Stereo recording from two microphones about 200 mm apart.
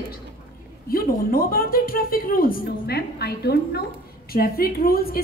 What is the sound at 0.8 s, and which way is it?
A woman's voice, 45° left (ahead or behind).